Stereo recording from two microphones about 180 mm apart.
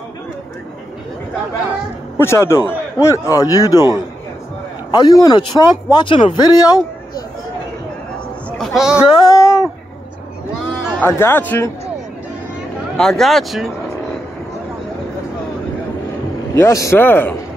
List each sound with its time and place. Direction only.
2.1 s a man's voice: 15° left (ahead or behind)
4.9 s speech: 20° left (ahead or behind)
8.5 s speech: centre (ahead or behind)
9.2 s a sound: 15° left (ahead or behind)
11.0 s a man's voice: 15° left (ahead or behind)
12.9 s speech: centre (ahead or behind)
16.5 s a man's voice: 15° left (ahead or behind)